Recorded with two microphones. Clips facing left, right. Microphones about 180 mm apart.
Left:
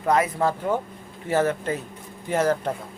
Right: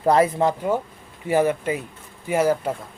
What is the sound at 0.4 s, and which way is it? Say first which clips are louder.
Speech: right 2 dB; 10° right (ahead or behind).